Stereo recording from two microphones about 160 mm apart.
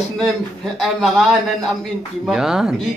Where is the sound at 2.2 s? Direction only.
5° right (ahead or behind).